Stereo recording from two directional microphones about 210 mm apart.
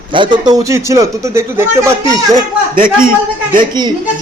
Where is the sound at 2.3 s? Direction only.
40° right (ahead or behind).